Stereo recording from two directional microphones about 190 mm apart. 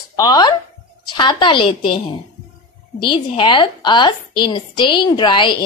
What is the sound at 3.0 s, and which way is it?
A woman's voice, 25° left (ahead or behind).